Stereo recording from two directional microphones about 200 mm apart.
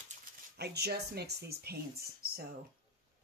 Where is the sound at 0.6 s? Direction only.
55° right (ahead or behind).